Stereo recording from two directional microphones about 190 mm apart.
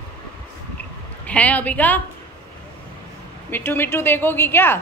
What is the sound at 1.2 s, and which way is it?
Speech, 5° left (ahead or behind).